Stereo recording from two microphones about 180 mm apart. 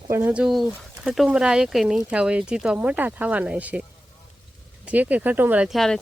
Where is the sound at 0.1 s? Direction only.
10° right (ahead or behind).